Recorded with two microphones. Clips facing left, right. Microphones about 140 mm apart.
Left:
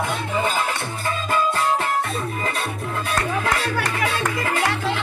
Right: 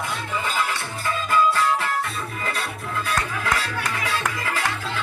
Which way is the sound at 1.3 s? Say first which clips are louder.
Right 1 dB; 25° left (ahead or behind).